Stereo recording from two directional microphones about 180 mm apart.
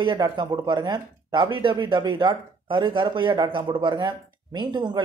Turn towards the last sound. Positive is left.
turn(degrees=-25)  # may be behind; listen again after turning